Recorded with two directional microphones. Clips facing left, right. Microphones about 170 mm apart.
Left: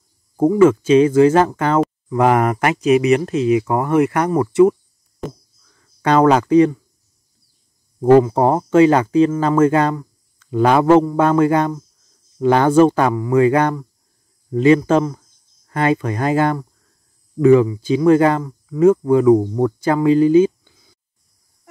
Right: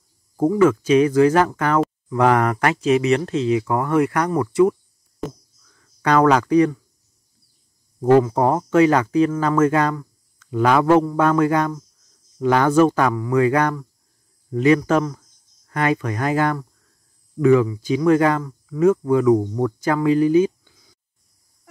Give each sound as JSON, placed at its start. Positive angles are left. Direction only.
{"t": 0.4, "sound": "speech", "side_deg": 25}
{"t": 6.0, "sound": "speech", "side_deg": 25}
{"t": 8.0, "sound": "speech", "side_deg": 30}